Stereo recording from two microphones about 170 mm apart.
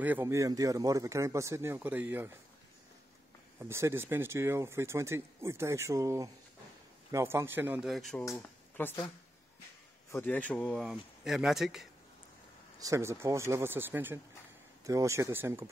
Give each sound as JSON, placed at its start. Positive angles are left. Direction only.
{"t": 0.0, "sound": "speech", "side_deg": -10}
{"t": 3.5, "sound": "speech", "side_deg": -15}
{"t": 7.8, "sound": "speech", "side_deg": 0}
{"t": 8.3, "sound": "speech", "side_deg": 10}
{"t": 10.1, "sound": "speech", "side_deg": 10}
{"t": 12.8, "sound": "speech", "side_deg": -20}